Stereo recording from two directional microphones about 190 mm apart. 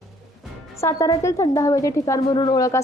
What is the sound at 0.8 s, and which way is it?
A woman's voice, 15° left (ahead or behind).